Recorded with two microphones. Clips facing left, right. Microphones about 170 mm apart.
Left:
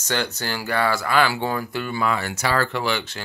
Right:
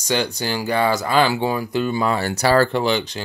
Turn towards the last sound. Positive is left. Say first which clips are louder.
# right 6 dB
turn(degrees=-20)  # may be behind; listen again after turning